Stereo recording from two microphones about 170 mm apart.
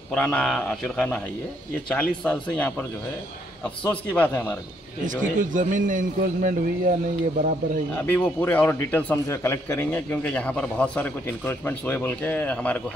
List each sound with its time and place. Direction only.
0.1 s a man's voice: 5° left (ahead or behind)
3.9 s a man's voice: 10° left (ahead or behind)
5.0 s a man's voice: 50° right (ahead or behind)
7.9 s a man's voice: 10° left (ahead or behind)